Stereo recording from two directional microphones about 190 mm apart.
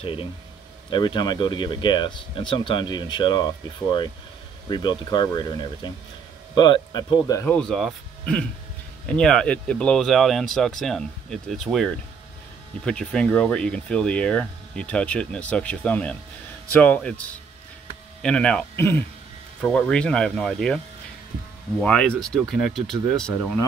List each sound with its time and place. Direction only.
0.0 s speech: 25° left (ahead or behind)
4.6 s speech: 25° left (ahead or behind)
7.4 s speech: 5° left (ahead or behind)